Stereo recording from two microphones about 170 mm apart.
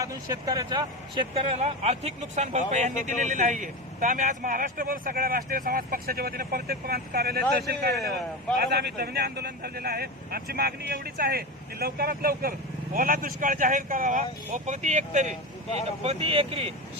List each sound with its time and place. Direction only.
0.0 s speech: 20° right (ahead or behind); by 15.4 s 45° right (ahead or behind)
16.0 s speech: 35° right (ahead or behind)